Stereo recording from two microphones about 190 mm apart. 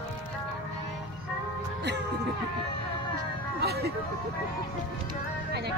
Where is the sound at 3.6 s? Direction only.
60° right (ahead or behind).